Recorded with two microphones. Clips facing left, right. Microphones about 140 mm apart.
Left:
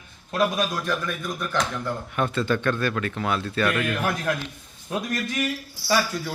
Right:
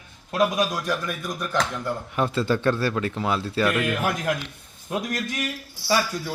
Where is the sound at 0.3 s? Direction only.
15° right (ahead or behind).